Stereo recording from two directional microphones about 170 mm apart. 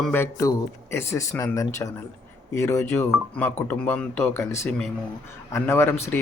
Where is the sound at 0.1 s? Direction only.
15° left (ahead or behind).